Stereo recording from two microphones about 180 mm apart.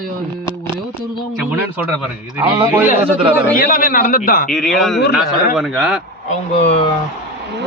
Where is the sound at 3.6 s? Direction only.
50° left (ahead or behind).